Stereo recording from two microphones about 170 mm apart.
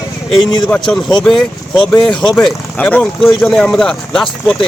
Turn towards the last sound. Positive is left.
turn(degrees=0)  # may be behind; listen again after turning